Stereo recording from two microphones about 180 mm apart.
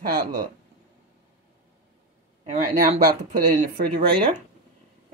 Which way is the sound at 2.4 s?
40° right (ahead or behind).